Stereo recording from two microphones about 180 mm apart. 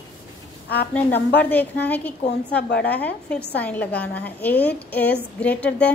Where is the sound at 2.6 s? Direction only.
60° left (ahead or behind).